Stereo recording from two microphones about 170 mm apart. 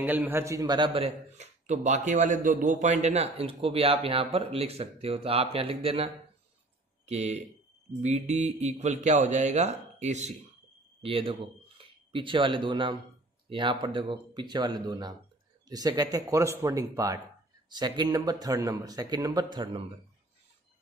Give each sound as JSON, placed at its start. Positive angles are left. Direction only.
{"t": 0.0, "sound": "a man's voice", "side_deg": -10}